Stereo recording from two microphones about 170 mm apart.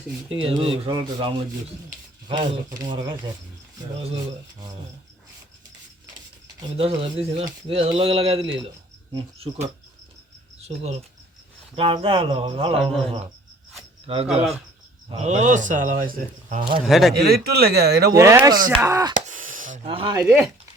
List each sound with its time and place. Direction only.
0.3 s speech: 30° right (ahead or behind)
3.9 s speech: 35° right (ahead or behind)
6.7 s speech: 35° right (ahead or behind)
10.6 s speech: 40° right (ahead or behind)
16.6 s speech: 30° right (ahead or behind)
16.8 s a man's voice: centre (ahead or behind)
17.2 s speech: 65° right (ahead or behind)
18.1 s speech: 15° right (ahead or behind)
19.3 s a sound: 50° right (ahead or behind)
19.9 s speech: 30° right (ahead or behind)
20.2 s speech: 15° right (ahead or behind)